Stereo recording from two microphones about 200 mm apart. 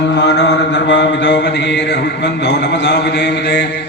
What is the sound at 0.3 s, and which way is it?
Mantra, 65° left (ahead or behind).